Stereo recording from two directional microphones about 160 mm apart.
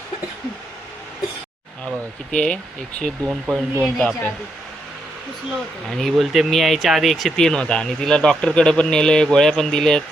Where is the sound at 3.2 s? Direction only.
15° right (ahead or behind).